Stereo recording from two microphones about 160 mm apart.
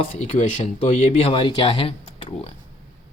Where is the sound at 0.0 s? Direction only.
45° left (ahead or behind).